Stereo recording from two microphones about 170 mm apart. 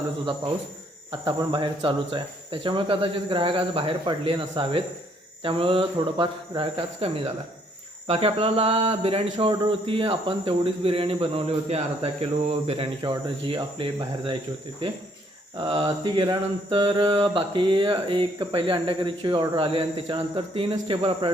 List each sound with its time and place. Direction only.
1.2 s speech: 25° right (ahead or behind)
15.7 s mantra: 30° right (ahead or behind)